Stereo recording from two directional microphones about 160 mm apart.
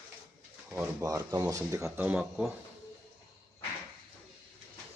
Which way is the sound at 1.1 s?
20° right (ahead or behind).